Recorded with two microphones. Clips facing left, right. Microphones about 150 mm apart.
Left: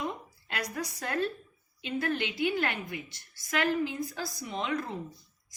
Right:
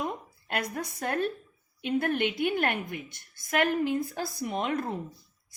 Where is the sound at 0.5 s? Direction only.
50° right (ahead or behind).